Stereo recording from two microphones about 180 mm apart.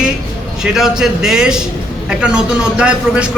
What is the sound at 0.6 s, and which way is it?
A man's voice, centre (ahead or behind).